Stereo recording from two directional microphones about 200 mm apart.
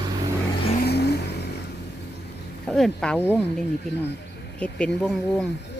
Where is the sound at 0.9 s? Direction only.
55° left (ahead or behind).